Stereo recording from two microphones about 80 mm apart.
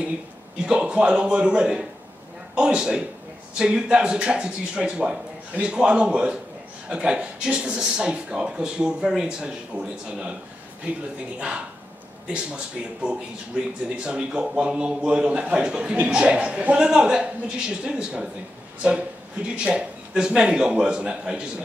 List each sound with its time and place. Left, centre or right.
0.7 s a man's voice: centre
11.3 s a man's voice: centre